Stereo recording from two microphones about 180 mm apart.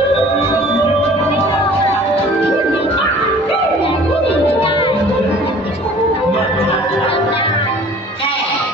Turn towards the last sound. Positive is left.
turn(degrees=30)  # may be behind; listen again after turning